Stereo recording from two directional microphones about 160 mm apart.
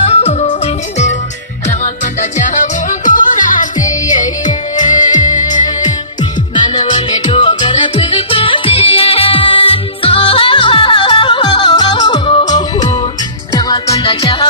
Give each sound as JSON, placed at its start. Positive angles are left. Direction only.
{"t": 0.1, "sound": "music", "side_deg": 40}
{"t": 2.6, "sound": "music", "side_deg": 55}
{"t": 6.5, "sound": "music", "side_deg": 30}
{"t": 14.0, "sound": "music", "side_deg": 35}